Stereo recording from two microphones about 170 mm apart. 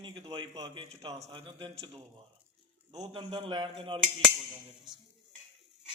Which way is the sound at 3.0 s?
30° right (ahead or behind).